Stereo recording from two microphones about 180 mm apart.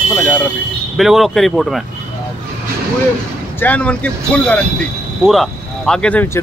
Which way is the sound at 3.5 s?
10° left (ahead or behind).